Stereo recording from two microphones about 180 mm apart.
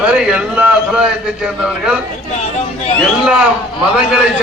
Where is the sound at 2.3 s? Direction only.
40° left (ahead or behind).